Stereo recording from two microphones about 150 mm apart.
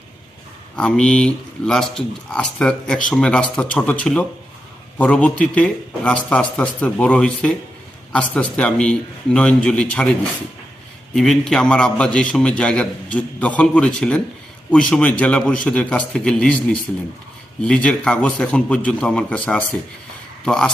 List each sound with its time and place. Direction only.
0.8 s a man's voice: 5° left (ahead or behind)